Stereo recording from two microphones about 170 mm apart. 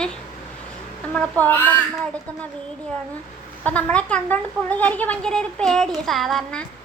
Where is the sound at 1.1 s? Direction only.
5° left (ahead or behind).